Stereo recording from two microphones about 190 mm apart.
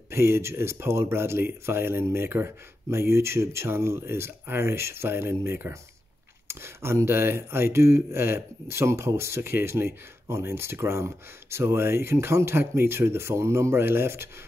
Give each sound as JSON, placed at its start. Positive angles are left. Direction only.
{"t": 0.1, "sound": "speech", "side_deg": -15}